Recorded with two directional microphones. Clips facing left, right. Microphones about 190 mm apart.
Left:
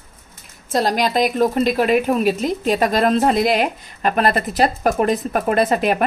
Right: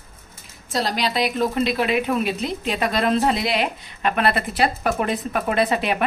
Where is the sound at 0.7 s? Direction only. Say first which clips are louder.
Left 5 dB; 50° left (ahead or behind).